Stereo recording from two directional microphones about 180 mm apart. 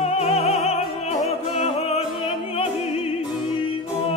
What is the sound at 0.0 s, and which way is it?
Opera, 35° left (ahead or behind).